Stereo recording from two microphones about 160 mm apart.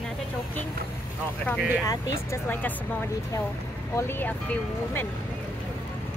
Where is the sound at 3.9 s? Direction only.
15° left (ahead or behind).